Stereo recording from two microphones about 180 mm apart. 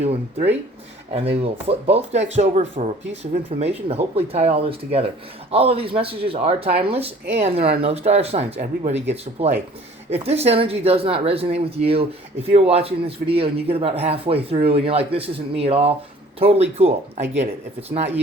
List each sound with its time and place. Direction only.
0.0 s speech: 35° right (ahead or behind)